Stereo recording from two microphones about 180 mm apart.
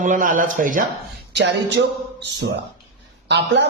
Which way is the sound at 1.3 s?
70° right (ahead or behind).